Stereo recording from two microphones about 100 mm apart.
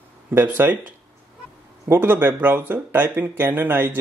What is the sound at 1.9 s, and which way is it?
Speech, 20° right (ahead or behind).